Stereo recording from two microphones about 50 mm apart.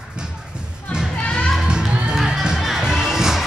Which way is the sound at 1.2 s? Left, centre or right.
Centre.